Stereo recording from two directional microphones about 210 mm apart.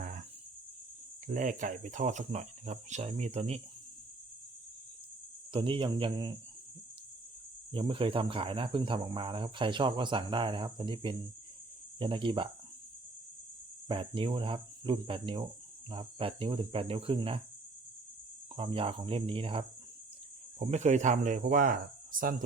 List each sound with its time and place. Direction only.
0.0 s cricket: 35° right (ahead or behind)
1.3 s speech: 35° right (ahead or behind)
5.5 s speech: 25° right (ahead or behind)
7.7 s speech: 25° right (ahead or behind)
13.8 s speech: 25° right (ahead or behind)
18.5 s speech: 25° right (ahead or behind); by 22.4 s 40° right (ahead or behind)